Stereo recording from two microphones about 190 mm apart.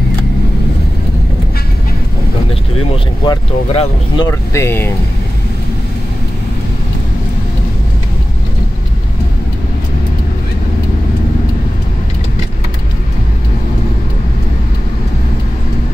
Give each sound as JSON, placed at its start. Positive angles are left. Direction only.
{"t": 3.3, "sound": "speech", "side_deg": 25}
{"t": 4.3, "sound": "speech", "side_deg": 15}